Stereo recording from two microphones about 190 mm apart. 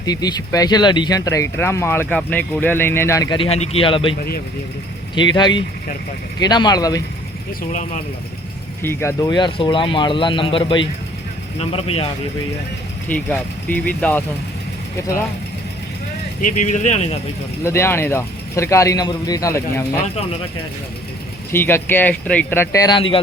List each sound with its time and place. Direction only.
0.0 s speech: 20° left (ahead or behind)
5.1 s speech: 25° left (ahead or behind)
8.8 s speech: 15° left (ahead or behind); by 12.0 s 30° left (ahead or behind)
13.1 s a man's voice: 10° left (ahead or behind)
16.4 s speech: 40° left (ahead or behind)
17.6 s a man's voice: 15° left (ahead or behind)
21.5 s a man's voice: 10° left (ahead or behind)